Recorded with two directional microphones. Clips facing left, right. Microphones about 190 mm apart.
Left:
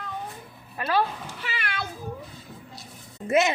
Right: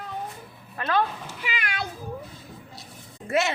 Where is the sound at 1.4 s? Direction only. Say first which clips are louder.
Right 2 dB; 15° right (ahead or behind).